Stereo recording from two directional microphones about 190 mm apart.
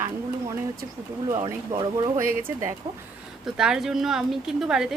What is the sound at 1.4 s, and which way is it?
Speech, 20° right (ahead or behind).